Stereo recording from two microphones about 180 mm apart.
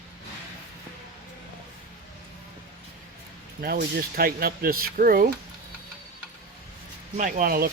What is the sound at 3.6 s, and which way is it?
Speech, 55° right (ahead or behind).